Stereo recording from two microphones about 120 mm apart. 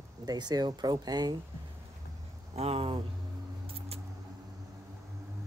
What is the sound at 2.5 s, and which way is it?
Speech, 55° right (ahead or behind).